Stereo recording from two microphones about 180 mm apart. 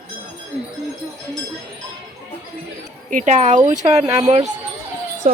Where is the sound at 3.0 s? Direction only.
45° right (ahead or behind).